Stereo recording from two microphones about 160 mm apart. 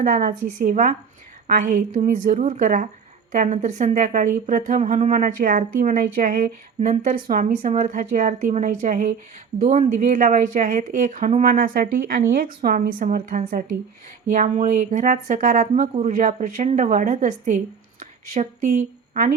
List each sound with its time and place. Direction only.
0.0 s a woman's voice: 55° right (ahead or behind)
11.4 s a woman's voice: 60° right (ahead or behind)
18.0 s a sound: 55° right (ahead or behind)